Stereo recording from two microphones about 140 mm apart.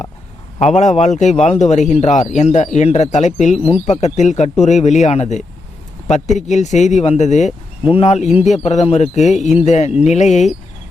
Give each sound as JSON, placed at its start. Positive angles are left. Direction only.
{"t": 0.8, "sound": "speech", "side_deg": 55}